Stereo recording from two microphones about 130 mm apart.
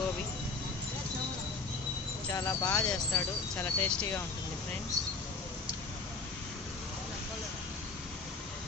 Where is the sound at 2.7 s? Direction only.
5° left (ahead or behind).